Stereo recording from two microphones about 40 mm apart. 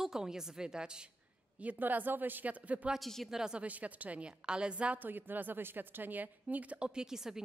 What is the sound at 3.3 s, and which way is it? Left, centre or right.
Speech, centre.